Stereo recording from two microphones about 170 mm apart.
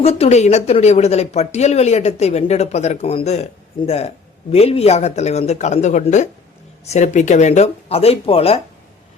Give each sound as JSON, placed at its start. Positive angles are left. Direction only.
{"t": 0.0, "sound": "speech", "side_deg": 35}